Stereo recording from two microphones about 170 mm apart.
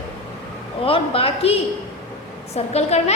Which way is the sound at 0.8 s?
35° left (ahead or behind).